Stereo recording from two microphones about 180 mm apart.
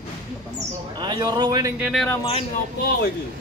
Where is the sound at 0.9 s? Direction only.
25° right (ahead or behind).